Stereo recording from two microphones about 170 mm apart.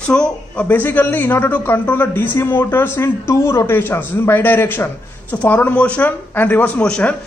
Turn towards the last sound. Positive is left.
turn(degrees=5)  # may be behind; listen again after turning